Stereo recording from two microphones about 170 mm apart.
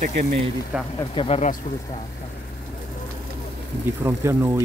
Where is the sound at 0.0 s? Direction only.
50° right (ahead or behind).